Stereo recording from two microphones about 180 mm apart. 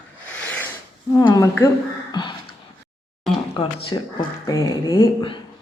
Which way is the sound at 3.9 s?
20° left (ahead or behind).